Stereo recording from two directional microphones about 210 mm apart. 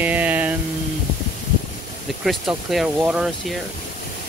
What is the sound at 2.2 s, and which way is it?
Speech, centre (ahead or behind).